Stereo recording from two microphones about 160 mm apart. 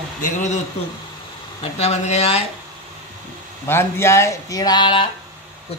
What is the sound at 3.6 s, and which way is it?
Speech, 15° left (ahead or behind).